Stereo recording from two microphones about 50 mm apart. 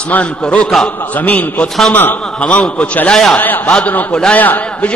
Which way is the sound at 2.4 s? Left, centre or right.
Left.